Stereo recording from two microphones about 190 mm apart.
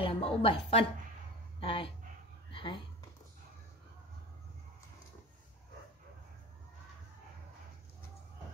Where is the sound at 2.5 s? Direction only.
25° left (ahead or behind).